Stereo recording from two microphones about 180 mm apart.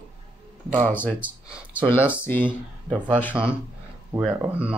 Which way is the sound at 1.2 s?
5° right (ahead or behind).